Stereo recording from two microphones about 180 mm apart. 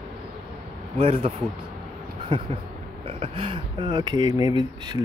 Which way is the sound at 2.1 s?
30° right (ahead or behind).